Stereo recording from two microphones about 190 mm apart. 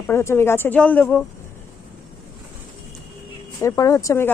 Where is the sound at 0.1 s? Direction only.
15° left (ahead or behind).